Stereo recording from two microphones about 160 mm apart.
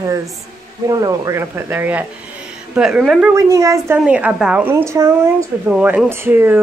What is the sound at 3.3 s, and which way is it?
Speech, 20° right (ahead or behind).